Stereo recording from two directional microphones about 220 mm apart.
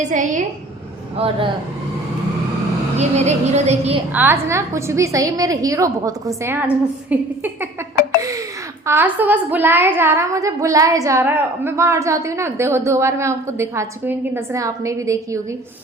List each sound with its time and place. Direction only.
0.1 s speech: 35° right (ahead or behind)
3.0 s speech: 30° right (ahead or behind)
4.1 s a woman's voice: 10° right (ahead or behind)
8.2 s a sound: 15° right (ahead or behind)
8.9 s a woman's voice: 10° right (ahead or behind)